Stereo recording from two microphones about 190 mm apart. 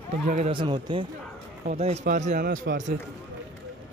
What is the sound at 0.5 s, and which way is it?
A man's voice, 25° right (ahead or behind).